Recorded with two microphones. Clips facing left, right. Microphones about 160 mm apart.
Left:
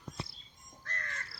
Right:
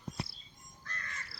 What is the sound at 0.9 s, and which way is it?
Crow, 70° left (ahead or behind).